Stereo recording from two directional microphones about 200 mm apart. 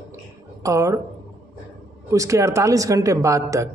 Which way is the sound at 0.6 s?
15° right (ahead or behind).